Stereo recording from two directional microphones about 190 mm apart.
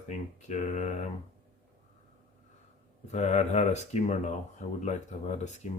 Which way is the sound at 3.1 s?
35° left (ahead or behind).